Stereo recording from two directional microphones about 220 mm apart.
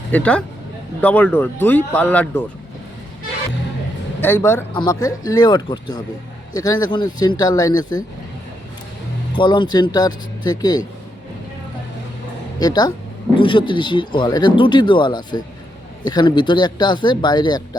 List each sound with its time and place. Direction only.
0.1 s speech: 5° left (ahead or behind)
4.2 s speech: 10° left (ahead or behind)
9.3 s speech: 20° left (ahead or behind)
12.5 s speech: 20° left (ahead or behind)